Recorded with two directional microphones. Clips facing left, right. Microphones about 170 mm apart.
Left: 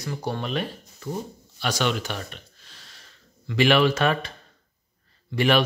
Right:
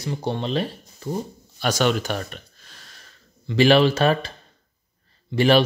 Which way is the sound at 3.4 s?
30° right (ahead or behind).